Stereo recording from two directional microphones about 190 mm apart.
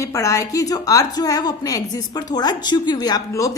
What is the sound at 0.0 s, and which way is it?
A woman's voice, 15° left (ahead or behind).